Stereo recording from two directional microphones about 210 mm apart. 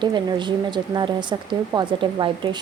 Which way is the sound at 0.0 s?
20° right (ahead or behind).